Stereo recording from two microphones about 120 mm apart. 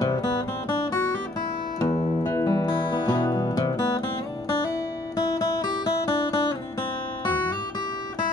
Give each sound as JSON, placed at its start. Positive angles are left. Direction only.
{"t": 2.2, "sound": "music", "side_deg": 20}
{"t": 5.1, "sound": "music", "side_deg": 35}